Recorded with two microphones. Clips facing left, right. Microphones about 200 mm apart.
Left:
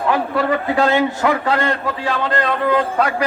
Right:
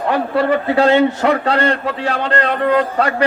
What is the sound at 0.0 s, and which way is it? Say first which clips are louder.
Speech: right 2 dB; 35° right (ahead or behind).